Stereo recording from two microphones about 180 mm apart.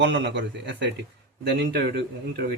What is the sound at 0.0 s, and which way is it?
Speech, 80° right.